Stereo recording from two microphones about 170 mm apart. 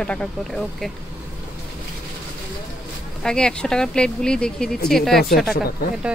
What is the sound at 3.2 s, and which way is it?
A woman's voice, 5° left (ahead or behind).